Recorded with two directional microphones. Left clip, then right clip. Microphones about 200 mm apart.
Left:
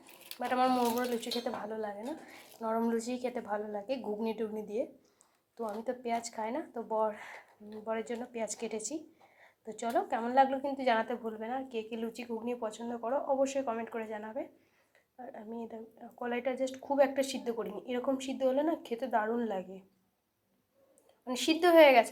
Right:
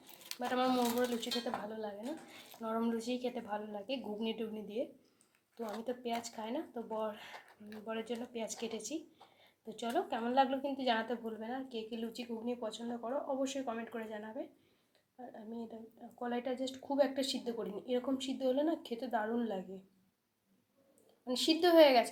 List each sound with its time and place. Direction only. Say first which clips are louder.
0.3 s a woman's voice: left 4 dB; 10° left (ahead or behind)
2.6 s a woman's voice: left 5 dB; 15° left (ahead or behind)
21.2 s a woman's voice: left 3 dB; 10° left (ahead or behind)